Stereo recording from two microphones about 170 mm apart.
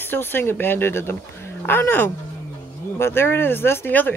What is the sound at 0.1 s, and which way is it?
Speech, 10° left (ahead or behind).